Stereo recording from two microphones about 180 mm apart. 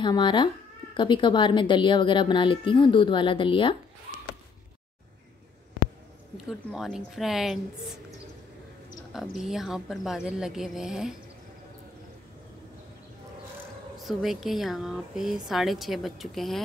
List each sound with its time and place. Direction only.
0.0 s a woman's voice: 25° left (ahead or behind)
6.3 s speech: centre (ahead or behind)
9.1 s speech: centre (ahead or behind)
13.9 s speech: centre (ahead or behind)